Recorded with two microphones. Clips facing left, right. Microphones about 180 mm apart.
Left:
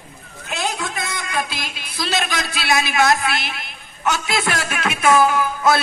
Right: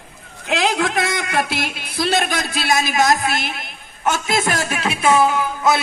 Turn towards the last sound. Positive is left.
turn(degrees=-25)  # may be behind; listen again after turning